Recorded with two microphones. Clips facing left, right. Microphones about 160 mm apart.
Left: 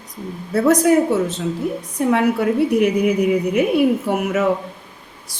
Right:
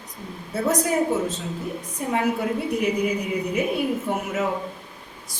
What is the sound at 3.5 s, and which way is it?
Speech, 75° left (ahead or behind).